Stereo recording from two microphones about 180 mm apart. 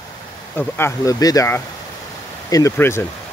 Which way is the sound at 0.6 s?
15° left (ahead or behind).